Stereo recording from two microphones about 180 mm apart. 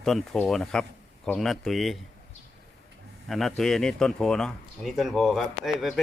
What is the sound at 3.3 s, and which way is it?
Speech, centre (ahead or behind).